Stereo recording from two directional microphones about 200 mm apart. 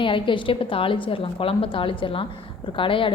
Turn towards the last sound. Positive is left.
turn(degrees=25)  # may be behind; listen again after turning